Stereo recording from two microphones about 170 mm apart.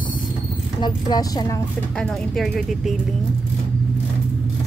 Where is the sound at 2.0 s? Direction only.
Centre (ahead or behind).